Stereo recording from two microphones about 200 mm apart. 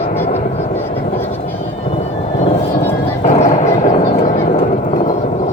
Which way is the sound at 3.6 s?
35° left (ahead or behind).